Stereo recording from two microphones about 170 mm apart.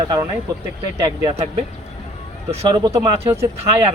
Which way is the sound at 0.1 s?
15° right (ahead or behind).